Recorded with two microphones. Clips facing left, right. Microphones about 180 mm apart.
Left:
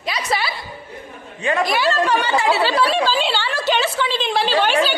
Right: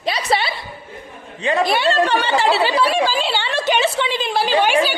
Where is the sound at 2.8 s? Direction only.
10° right (ahead or behind).